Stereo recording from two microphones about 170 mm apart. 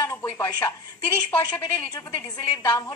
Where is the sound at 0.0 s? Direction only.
15° left (ahead or behind).